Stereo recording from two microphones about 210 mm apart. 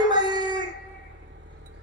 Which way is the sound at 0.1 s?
20° right (ahead or behind).